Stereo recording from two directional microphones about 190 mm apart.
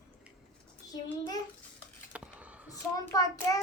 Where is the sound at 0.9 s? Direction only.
20° left (ahead or behind).